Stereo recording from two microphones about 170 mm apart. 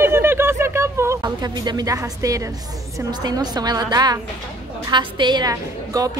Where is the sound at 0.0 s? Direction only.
15° right (ahead or behind).